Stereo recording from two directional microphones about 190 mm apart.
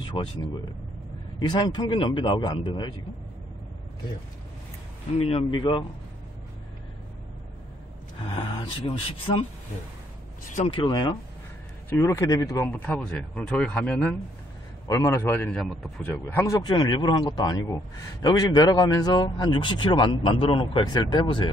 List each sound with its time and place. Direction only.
0.0 s a man's voice: 25° left (ahead or behind)
5.1 s a man's voice: 30° left (ahead or behind)
8.2 s a man's voice: 25° left (ahead or behind)
10.5 s speech: 40° left (ahead or behind)
10.8 s a man's voice: 20° left (ahead or behind)